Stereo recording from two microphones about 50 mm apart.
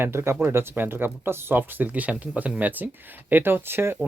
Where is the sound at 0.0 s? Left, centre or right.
Right.